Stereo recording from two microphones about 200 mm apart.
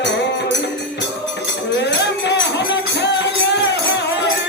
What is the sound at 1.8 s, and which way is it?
Music, 60° left (ahead or behind).